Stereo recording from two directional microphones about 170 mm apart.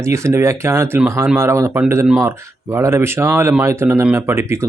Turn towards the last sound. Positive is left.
turn(degrees=-15)  # may be behind; listen again after turning